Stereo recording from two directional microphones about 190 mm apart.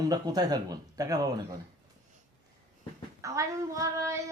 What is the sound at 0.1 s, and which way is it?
Speech, 20° right (ahead or behind).